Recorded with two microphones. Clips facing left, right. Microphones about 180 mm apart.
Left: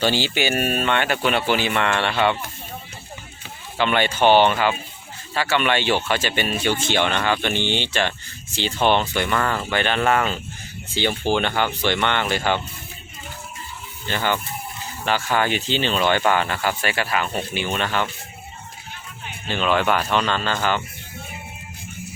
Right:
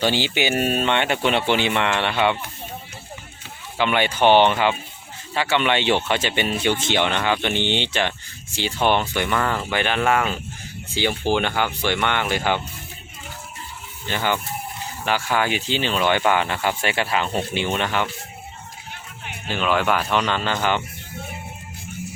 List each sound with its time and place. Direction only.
0.0 s speech: 15° right (ahead or behind)
3.8 s speech: 15° right (ahead or behind)
14.1 s speech: 15° right (ahead or behind)
19.5 s speech: 5° right (ahead or behind)